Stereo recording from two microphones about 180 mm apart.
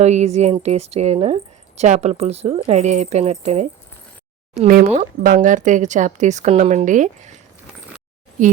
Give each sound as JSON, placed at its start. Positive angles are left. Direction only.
{"t": 0.0, "sound": "a woman's voice", "side_deg": -40}
{"t": 4.9, "sound": "speech", "side_deg": -45}